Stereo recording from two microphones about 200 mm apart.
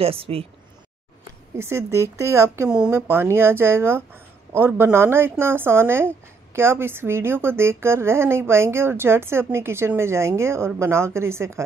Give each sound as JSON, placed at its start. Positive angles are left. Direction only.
{"t": 0.0, "sound": "speech", "side_deg": -30}
{"t": 1.6, "sound": "speech", "side_deg": -15}